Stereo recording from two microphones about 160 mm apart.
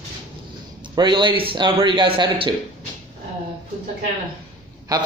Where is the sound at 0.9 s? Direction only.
30° right (ahead or behind).